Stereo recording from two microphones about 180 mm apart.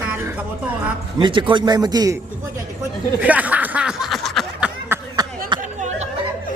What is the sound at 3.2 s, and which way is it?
Snicker, 10° right (ahead or behind).